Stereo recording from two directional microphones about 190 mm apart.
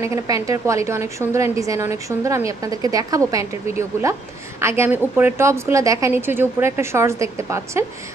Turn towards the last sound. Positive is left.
turn(degrees=-15)  # may be behind; listen again after turning